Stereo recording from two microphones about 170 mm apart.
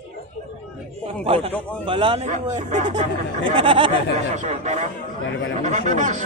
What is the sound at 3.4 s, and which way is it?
Speech, 30° right (ahead or behind).